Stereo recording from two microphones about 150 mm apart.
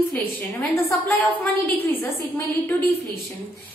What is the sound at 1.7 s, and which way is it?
A woman's voice, 10° left (ahead or behind).